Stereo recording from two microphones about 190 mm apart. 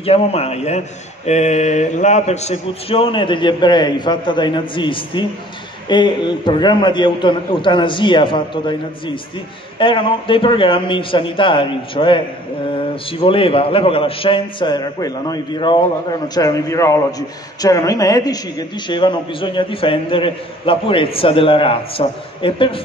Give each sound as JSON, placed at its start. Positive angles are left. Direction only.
{"t": 0.0, "sound": "a man's voice", "side_deg": 30}
{"t": 13.2, "sound": "a woman's voice", "side_deg": 30}